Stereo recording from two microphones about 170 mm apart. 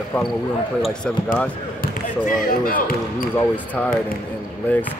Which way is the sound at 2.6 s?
55° left (ahead or behind).